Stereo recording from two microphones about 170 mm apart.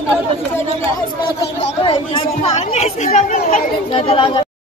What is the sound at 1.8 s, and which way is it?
Speech, 35° left (ahead or behind).